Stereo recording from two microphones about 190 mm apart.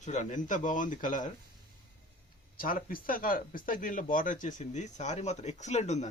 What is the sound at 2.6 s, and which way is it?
Speech, 50° left (ahead or behind).